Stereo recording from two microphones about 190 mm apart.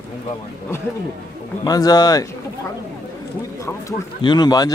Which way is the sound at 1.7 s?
20° left (ahead or behind).